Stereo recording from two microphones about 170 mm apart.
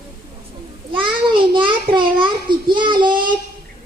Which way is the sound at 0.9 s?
30° right (ahead or behind).